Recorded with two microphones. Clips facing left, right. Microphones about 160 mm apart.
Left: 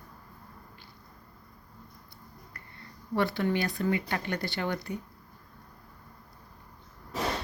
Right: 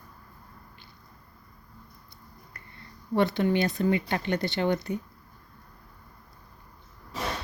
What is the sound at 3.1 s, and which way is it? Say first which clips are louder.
Speech: right 4 dB; 20° right (ahead or behind).